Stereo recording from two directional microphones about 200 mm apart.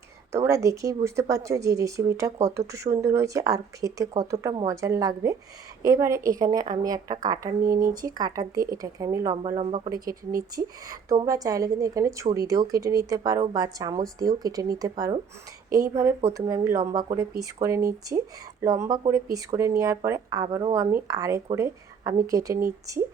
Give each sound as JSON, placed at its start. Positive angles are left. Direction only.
{"t": 0.3, "sound": "a woman's voice", "side_deg": -15}